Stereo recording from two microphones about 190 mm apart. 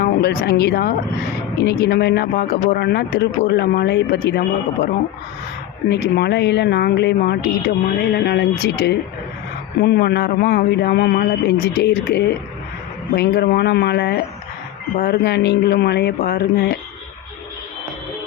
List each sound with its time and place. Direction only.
0.0 s speech: 60° left (ahead or behind)
5.9 s speech: 60° left (ahead or behind)